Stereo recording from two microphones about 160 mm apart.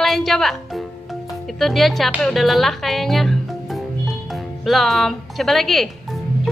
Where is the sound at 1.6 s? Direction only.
Centre (ahead or behind).